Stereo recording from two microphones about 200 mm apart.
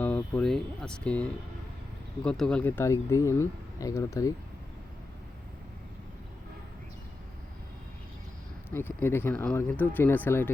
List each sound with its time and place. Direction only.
0.0 s speech: 5° left (ahead or behind)
8.7 s speech: 10° left (ahead or behind)